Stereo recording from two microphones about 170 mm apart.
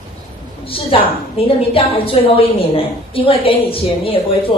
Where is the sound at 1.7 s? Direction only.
35° left (ahead or behind).